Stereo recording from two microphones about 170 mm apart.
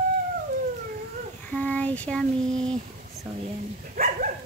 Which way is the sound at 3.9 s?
55° right (ahead or behind).